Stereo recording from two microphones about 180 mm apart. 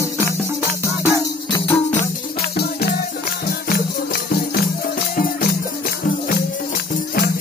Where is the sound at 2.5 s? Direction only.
60° left (ahead or behind).